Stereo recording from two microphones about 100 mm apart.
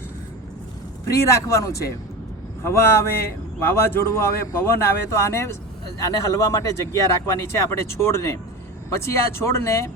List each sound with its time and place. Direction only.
1.1 s speech: 30° left (ahead or behind)